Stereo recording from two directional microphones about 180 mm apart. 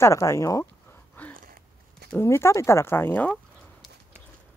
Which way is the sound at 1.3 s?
50° right (ahead or behind).